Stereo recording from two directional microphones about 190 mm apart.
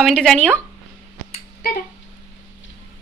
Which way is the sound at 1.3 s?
45° left (ahead or behind).